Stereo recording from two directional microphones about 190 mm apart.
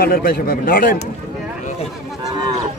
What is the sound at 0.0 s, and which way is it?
A man's voice, 50° left (ahead or behind).